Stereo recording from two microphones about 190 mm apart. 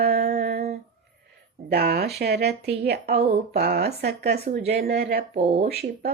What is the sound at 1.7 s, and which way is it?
A woman's voice, 55° right (ahead or behind).